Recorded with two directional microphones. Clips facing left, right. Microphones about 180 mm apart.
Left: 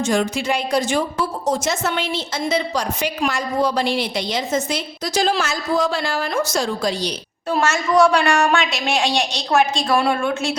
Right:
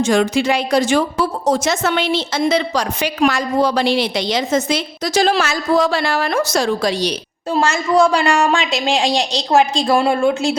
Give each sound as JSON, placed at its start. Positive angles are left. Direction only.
{"t": 0.0, "sound": "a woman's voice", "side_deg": -80}
{"t": 7.5, "sound": "speech", "side_deg": -30}